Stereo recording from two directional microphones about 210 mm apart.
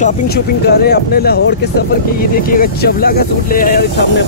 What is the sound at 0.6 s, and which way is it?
Speech, 50° left (ahead or behind).